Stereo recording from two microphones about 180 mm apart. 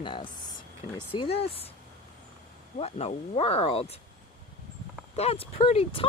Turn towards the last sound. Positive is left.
turn(degrees=35)  # may be behind; listen again after turning